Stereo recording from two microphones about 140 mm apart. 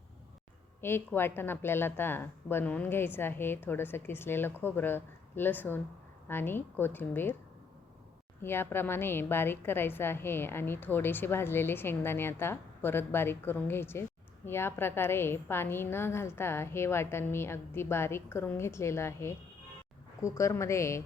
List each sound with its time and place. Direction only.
0.8 s a woman's voice: 15° left (ahead or behind)
8.4 s a woman's voice: 15° left (ahead or behind)